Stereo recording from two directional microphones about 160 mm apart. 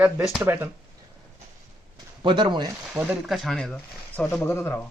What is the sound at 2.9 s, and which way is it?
Speech, 5° right (ahead or behind).